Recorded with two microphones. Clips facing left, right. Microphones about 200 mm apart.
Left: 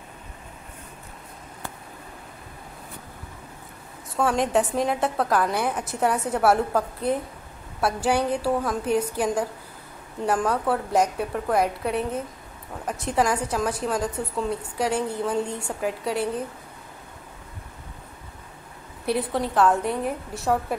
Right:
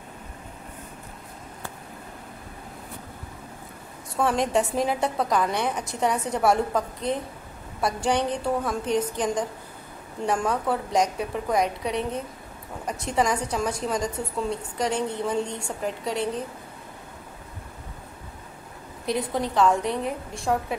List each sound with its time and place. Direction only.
4.2 s a woman's voice: centre (ahead or behind)
19.0 s a woman's voice: 5° left (ahead or behind)